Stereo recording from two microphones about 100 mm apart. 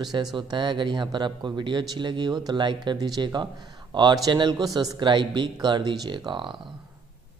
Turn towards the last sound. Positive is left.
turn(degrees=-50)  # may be behind; listen again after turning